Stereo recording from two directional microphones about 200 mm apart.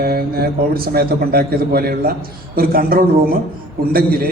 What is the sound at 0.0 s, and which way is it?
A man's voice, 50° right (ahead or behind).